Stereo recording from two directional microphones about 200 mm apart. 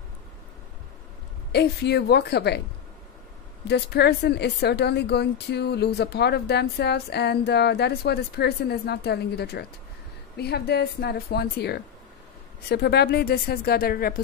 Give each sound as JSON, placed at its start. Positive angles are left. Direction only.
{"t": 1.5, "sound": "speech", "side_deg": 55}
{"t": 3.6, "sound": "a woman's voice", "side_deg": 55}